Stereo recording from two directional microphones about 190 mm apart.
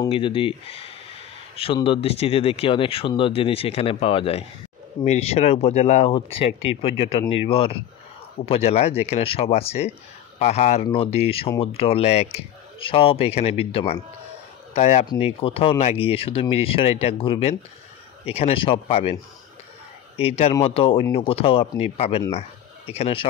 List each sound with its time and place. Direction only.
0.1 s speech: 25° left (ahead or behind)
20.2 s speech: 30° left (ahead or behind)